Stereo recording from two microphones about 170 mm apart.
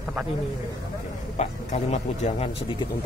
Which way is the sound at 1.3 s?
40° left (ahead or behind).